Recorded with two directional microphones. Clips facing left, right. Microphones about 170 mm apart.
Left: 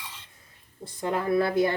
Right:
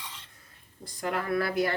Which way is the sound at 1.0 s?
25° left (ahead or behind).